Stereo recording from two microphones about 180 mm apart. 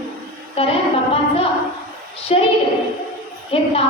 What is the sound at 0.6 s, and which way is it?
A woman's voice, 30° left (ahead or behind).